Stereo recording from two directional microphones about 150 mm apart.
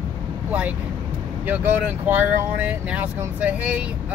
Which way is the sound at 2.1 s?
10° right (ahead or behind).